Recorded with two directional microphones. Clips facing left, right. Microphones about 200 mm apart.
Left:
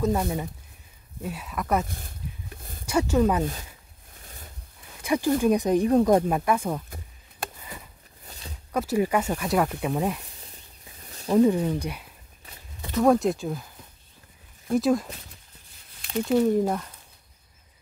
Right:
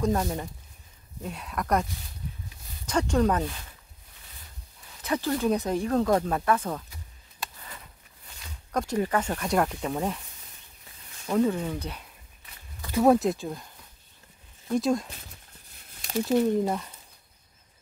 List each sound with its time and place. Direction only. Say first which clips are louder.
0.0 s speech: left 1 dB; centre (ahead or behind)
1.9 s a sound: left 1 dB; 50° left (ahead or behind)
2.9 s speech: left 2 dB; 5° left (ahead or behind)
5.0 s speech: left 4 dB; 15° left (ahead or behind)
6.9 s chop: left 6 dB; 50° left (ahead or behind)
8.3 s a sound: left 5 dB; 35° left (ahead or behind)
8.7 s speech: left 3 dB; 10° left (ahead or behind)
11.1 s snake: left 4 dB; 35° left (ahead or behind)
11.3 s speech: left 5 dB; 15° left (ahead or behind)
12.9 s speech: even; 5° right (ahead or behind)
14.8 s speech: left 3 dB; centre (ahead or behind)
16.3 s speech: left 2 dB; centre (ahead or behind)